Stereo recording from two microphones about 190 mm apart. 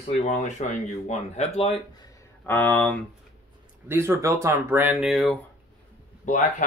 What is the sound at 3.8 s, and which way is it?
Speech, 15° right (ahead or behind).